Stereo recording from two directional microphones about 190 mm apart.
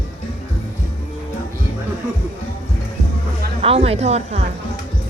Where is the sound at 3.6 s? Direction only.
30° right (ahead or behind).